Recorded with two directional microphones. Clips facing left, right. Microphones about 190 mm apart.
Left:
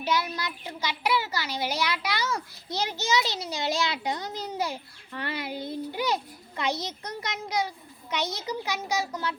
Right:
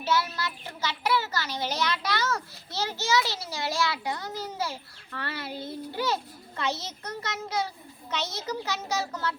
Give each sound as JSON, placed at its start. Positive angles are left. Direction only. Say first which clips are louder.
{"t": 0.0, "sound": "a child's voice", "louder": "even", "side_deg": 15}